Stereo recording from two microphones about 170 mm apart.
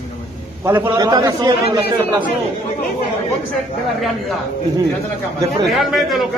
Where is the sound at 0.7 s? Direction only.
15° right (ahead or behind).